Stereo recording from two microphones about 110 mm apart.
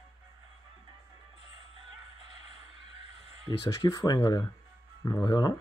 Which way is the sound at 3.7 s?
30° left (ahead or behind).